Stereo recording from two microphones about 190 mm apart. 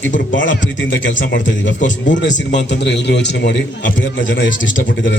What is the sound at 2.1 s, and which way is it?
A man's voice, 70° left (ahead or behind).